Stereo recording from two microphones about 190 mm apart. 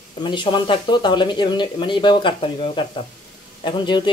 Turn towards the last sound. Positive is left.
turn(degrees=25)  # may be behind; listen again after turning